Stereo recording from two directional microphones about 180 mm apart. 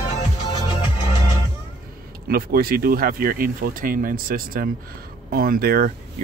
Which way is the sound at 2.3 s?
55° right (ahead or behind).